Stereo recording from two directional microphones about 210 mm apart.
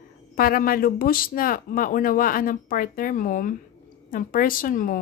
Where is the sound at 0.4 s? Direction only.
45° left (ahead or behind).